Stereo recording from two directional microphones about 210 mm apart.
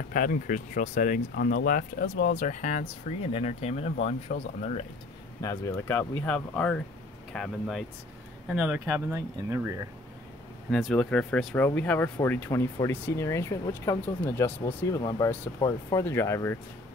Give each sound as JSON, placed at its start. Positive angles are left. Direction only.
{"t": 0.1, "sound": "speech", "side_deg": 40}
{"t": 5.4, "sound": "speech", "side_deg": 15}
{"t": 10.7, "sound": "speech", "side_deg": 0}